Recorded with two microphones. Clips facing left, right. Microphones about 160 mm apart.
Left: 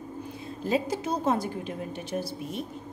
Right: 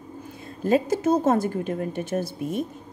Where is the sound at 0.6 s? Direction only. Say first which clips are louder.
Right 7 dB; 50° right (ahead or behind).